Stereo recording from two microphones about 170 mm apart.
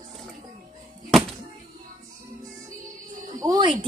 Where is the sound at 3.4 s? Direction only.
25° right (ahead or behind).